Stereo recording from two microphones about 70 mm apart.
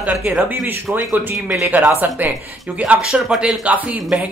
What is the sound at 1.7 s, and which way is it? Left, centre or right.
Speech, right.